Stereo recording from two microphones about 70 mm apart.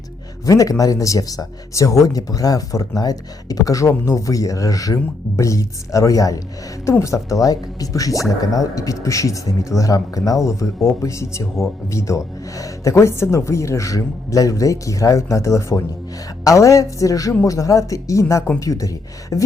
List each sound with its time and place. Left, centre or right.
0.4 s speech: left